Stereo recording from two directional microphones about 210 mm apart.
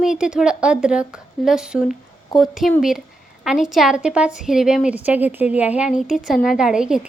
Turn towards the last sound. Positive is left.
turn(degrees=-5)  # may be behind; listen again after turning